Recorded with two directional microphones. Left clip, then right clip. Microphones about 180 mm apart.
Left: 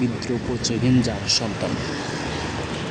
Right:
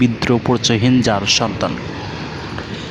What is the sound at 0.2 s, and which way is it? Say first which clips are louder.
Speech: right 10 dB; 45° right (ahead or behind).